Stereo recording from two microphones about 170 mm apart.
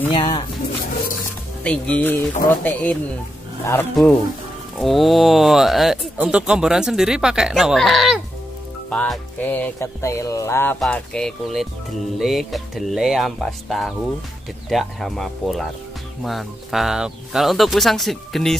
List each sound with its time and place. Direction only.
0.1 s speech: 25° left (ahead or behind)
1.6 s music: 5° left (ahead or behind)
4.7 s speech: centre (ahead or behind)
8.9 s music: 5° left (ahead or behind)
10.8 s speech: 5° left (ahead or behind)